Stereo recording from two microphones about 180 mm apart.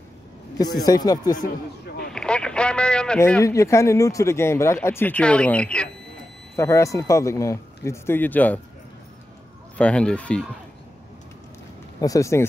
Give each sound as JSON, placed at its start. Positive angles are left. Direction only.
{"t": 0.8, "sound": "speech", "side_deg": 20}
{"t": 1.3, "sound": "speech", "side_deg": 50}
{"t": 2.1, "sound": "a sound", "side_deg": 5}
{"t": 3.2, "sound": "speech", "side_deg": 15}
{"t": 9.8, "sound": "speech", "side_deg": 5}
{"t": 12.0, "sound": "speech", "side_deg": 20}